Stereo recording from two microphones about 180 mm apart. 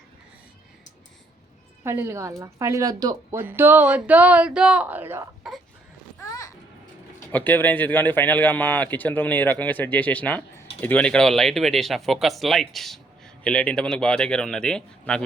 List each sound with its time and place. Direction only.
1.8 s speech: 15° right (ahead or behind)
7.3 s speech: 10° left (ahead or behind)